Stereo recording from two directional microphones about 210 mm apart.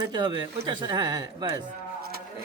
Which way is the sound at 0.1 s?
20° right (ahead or behind).